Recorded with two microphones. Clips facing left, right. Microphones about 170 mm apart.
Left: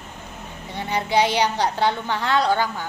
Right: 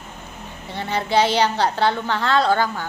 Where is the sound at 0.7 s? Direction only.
15° left (ahead or behind).